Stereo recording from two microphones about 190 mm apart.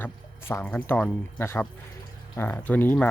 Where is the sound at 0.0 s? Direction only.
10° left (ahead or behind).